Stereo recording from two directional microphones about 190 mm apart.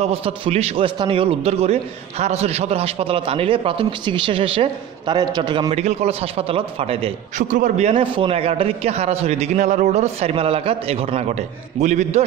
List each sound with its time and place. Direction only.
0.0 s a man's voice: 30° right (ahead or behind)